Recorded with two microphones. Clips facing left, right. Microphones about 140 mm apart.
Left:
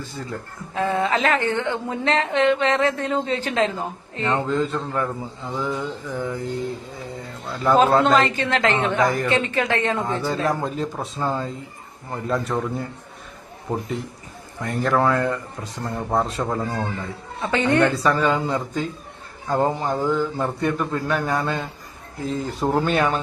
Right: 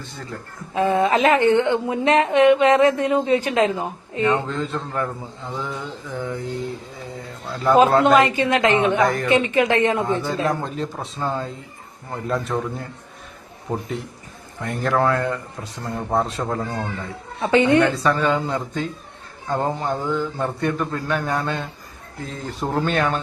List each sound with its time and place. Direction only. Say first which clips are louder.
0.7 s speech: right 3 dB; 20° right (ahead or behind)
4.4 s a man's voice: left 3 dB; centre (ahead or behind)
7.6 s a man's voice: right 1 dB; 5° right (ahead or behind)
8.3 s speech: right 3 dB; 15° right (ahead or behind)
9.0 s a man's voice: right 1 dB; centre (ahead or behind)
9.2 s speech: right 4 dB; 15° right (ahead or behind)
10.4 s a man's voice: even; centre (ahead or behind)
13.7 s a man's voice: even; 5° left (ahead or behind)
17.4 s speech: right 3 dB; 15° right (ahead or behind)
17.9 s a man's voice: even; centre (ahead or behind)